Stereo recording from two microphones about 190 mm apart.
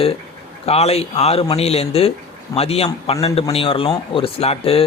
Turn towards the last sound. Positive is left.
turn(degrees=30)  # may be behind; listen again after turning